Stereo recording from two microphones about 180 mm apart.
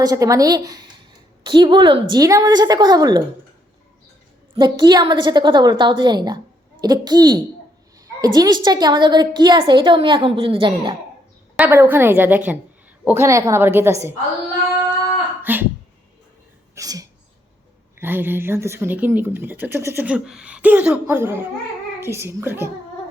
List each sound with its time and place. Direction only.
0.0 s a woman's voice: 20° right (ahead or behind)
4.5 s a woman's voice: 25° right (ahead or behind)
11.5 s a woman's voice: 10° right (ahead or behind)
15.5 s a woman's voice: 10° right (ahead or behind)
16.7 s throat clearing: 20° right (ahead or behind)
18.0 s a woman's voice: 10° right (ahead or behind)